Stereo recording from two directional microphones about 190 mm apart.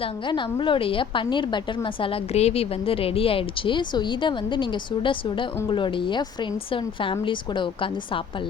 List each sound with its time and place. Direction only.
0.0 s a woman's voice: 25° left (ahead or behind)